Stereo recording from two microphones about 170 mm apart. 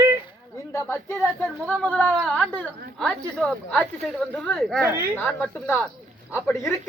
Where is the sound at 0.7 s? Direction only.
15° left (ahead or behind).